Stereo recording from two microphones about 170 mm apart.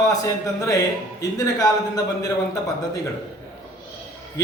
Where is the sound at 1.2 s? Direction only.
20° left (ahead or behind).